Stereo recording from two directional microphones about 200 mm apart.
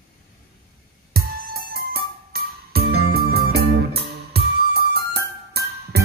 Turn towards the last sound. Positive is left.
turn(degrees=-55)  # may be behind; listen again after turning